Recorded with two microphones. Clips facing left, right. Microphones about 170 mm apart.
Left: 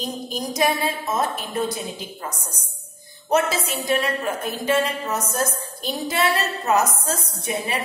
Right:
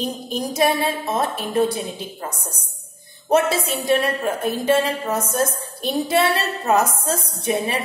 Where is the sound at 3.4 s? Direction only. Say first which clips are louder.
Right 4 dB; 25° right (ahead or behind).